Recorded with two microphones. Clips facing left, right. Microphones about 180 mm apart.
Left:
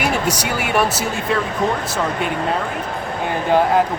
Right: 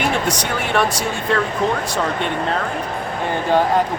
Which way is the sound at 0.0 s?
5° left (ahead or behind).